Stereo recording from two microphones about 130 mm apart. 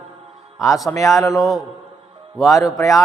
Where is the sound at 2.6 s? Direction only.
25° left (ahead or behind).